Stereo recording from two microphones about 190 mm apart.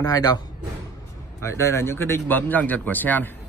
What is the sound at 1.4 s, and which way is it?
Speech, 15° left (ahead or behind).